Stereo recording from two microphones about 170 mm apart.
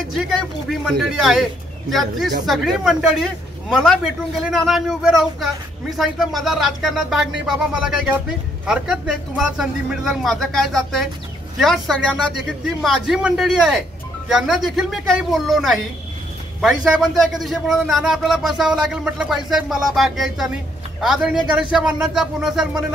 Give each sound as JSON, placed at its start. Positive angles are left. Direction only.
{"t": 0.1, "sound": "speech", "side_deg": 0}